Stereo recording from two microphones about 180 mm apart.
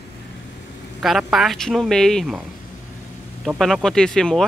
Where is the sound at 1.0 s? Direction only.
Centre (ahead or behind).